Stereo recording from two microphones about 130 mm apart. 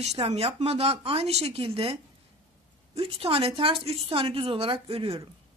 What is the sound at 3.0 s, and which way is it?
Speech, 45° right (ahead or behind).